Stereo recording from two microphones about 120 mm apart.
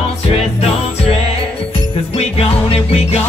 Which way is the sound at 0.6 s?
55° left (ahead or behind).